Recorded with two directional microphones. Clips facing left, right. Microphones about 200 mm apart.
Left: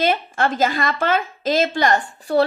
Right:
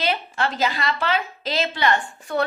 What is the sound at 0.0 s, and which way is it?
A woman's voice, 50° left (ahead or behind).